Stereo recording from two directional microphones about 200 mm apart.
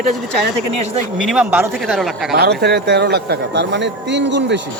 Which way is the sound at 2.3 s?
55° right (ahead or behind).